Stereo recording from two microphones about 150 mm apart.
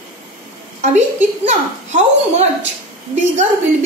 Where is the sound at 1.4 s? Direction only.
50° right (ahead or behind).